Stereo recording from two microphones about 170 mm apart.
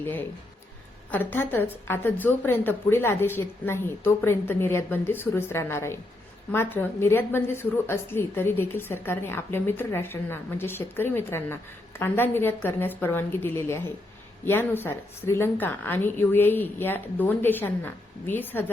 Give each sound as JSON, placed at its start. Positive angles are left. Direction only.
{"t": 0.0, "sound": "a woman's voice", "side_deg": 10}